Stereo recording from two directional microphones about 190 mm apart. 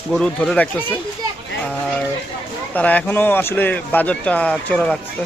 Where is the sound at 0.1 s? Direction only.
5° left (ahead or behind).